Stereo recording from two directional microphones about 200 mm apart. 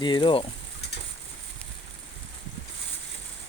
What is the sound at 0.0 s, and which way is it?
Speech, 25° left (ahead or behind).